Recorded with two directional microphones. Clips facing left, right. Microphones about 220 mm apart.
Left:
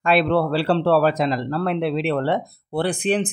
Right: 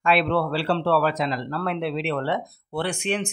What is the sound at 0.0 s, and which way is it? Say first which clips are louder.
A man's voice: left 3 dB; 40° left (ahead or behind).